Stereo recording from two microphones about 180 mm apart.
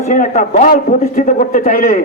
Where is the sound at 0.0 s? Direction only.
45° left (ahead or behind).